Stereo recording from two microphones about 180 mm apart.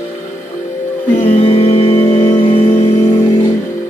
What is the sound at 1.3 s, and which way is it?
Music, 35° left (ahead or behind).